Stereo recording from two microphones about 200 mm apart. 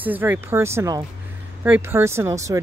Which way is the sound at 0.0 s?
10° right (ahead or behind).